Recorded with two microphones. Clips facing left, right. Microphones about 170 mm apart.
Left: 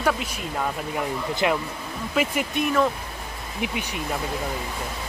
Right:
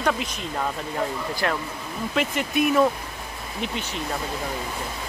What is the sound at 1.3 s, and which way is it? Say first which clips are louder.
Speech: left 7 dB; 20° left (ahead or behind).